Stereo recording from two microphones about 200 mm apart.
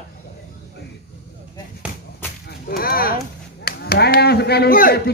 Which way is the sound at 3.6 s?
50° left (ahead or behind).